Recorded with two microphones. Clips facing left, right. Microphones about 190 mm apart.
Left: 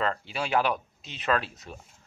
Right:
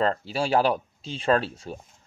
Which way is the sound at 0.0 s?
35° right (ahead or behind).